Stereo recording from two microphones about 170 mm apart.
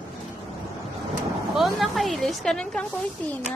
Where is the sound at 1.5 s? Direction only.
Centre (ahead or behind).